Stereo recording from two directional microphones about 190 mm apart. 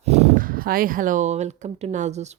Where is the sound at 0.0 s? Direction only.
35° right (ahead or behind).